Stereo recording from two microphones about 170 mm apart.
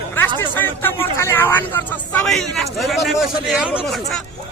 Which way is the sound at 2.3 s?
Centre (ahead or behind).